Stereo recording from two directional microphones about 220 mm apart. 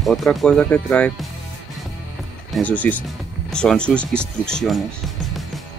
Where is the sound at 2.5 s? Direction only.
5° left (ahead or behind).